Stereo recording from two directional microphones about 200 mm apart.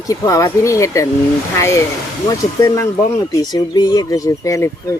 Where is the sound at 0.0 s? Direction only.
15° left (ahead or behind).